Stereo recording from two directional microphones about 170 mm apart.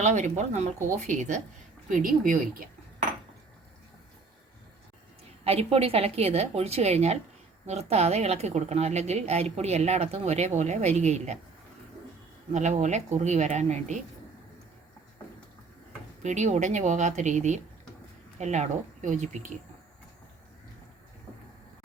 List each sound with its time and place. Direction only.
0.0 s a woman's voice: 40° right (ahead or behind)
5.5 s a woman's voice: 35° right (ahead or behind)
12.5 s speech: 45° right (ahead or behind)
16.2 s speech: 45° right (ahead or behind)